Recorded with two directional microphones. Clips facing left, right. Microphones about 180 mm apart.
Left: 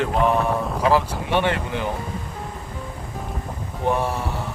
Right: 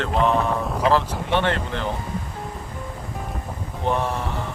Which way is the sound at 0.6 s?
Centre (ahead or behind).